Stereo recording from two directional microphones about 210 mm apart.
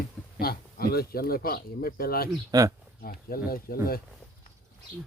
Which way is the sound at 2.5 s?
15° right (ahead or behind).